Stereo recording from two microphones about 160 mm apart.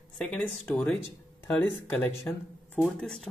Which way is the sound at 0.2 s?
5° left (ahead or behind).